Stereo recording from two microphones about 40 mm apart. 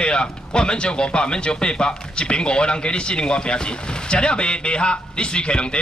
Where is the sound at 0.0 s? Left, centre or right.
Left.